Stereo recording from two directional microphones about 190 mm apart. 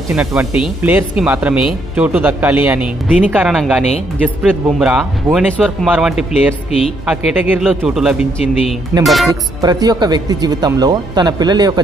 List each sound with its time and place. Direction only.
0.1 s speech: 5° right (ahead or behind)
9.3 s speech: 20° right (ahead or behind)